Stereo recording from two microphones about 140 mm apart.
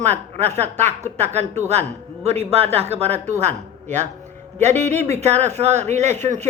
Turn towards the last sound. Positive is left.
turn(degrees=-55)  # may be behind; listen again after turning